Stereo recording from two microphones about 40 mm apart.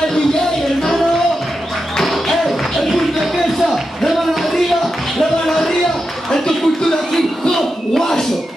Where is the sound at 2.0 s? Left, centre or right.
Centre.